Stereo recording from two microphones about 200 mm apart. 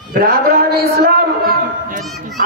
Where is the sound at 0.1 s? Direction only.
50° right (ahead or behind).